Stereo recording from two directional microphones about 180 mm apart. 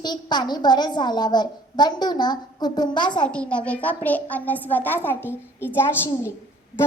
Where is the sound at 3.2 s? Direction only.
5° left (ahead or behind).